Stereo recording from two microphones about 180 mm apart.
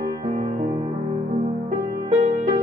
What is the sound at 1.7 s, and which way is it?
Music, 40° right (ahead or behind).